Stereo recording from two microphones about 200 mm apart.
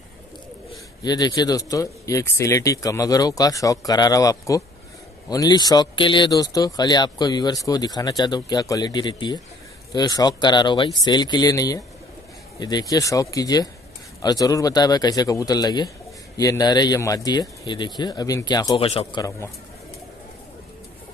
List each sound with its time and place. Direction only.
1.0 s speech: 20° left (ahead or behind)